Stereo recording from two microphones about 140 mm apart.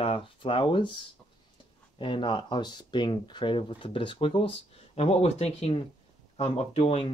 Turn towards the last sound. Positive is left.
turn(degrees=45)  # may be behind; listen again after turning